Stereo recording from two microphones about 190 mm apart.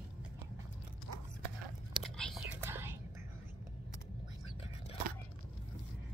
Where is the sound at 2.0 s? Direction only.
Centre (ahead or behind).